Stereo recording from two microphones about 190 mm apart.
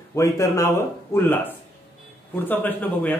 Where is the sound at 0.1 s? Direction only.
15° left (ahead or behind).